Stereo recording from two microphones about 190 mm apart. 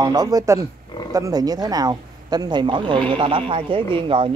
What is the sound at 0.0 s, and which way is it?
Speech, 20° right (ahead or behind).